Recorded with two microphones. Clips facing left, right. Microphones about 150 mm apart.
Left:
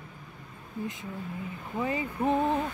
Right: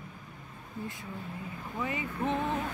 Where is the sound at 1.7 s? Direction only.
30° left (ahead or behind).